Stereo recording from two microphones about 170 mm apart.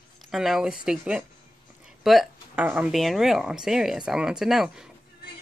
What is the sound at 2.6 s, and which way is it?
Speech, 5° right (ahead or behind).